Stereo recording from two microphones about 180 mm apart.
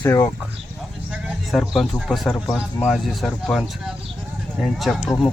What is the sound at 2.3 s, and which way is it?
Speech, 15° left (ahead or behind).